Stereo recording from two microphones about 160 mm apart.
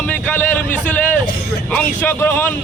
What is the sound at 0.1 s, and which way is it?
Speech, 10° left (ahead or behind).